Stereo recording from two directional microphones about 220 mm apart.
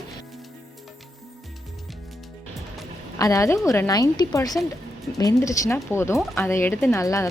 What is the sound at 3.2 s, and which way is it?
A woman's voice, 15° left (ahead or behind).